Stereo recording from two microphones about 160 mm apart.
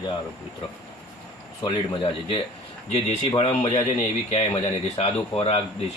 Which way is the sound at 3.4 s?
40° left (ahead or behind).